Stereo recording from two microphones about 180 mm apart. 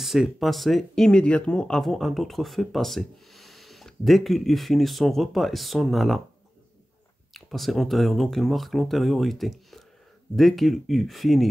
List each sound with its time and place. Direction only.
0.0 s speech: centre (ahead or behind)
7.3 s speech: centre (ahead or behind)